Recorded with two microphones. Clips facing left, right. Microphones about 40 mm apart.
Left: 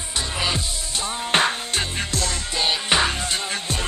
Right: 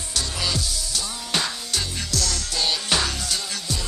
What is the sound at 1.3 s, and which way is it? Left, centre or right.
Music, left.